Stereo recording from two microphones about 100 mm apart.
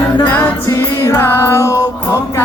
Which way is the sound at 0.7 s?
30° left (ahead or behind).